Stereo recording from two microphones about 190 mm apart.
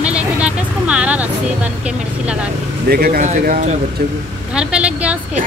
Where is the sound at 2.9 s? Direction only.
50° right (ahead or behind).